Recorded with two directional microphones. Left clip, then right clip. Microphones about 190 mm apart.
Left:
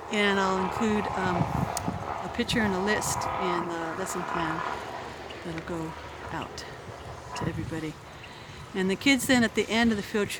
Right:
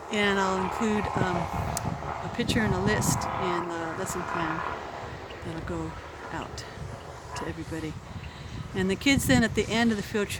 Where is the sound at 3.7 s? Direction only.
5° right (ahead or behind).